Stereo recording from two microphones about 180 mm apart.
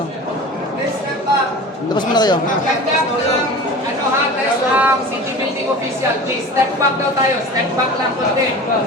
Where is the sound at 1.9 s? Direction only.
25° left (ahead or behind).